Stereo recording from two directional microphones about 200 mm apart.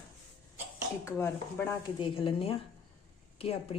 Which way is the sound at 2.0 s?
25° left (ahead or behind).